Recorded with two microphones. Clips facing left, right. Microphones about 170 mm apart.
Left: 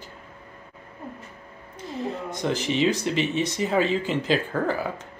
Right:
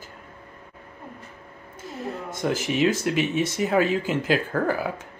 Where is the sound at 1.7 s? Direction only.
Centre (ahead or behind).